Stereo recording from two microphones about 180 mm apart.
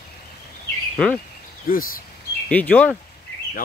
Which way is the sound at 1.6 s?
55° left (ahead or behind).